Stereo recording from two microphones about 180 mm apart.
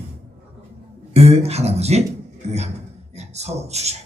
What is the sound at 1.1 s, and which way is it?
Speech, 35° right (ahead or behind).